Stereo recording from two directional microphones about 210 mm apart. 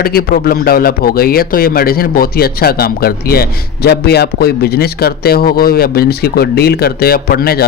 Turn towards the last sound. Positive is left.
turn(degrees=45)  # may be behind; listen again after turning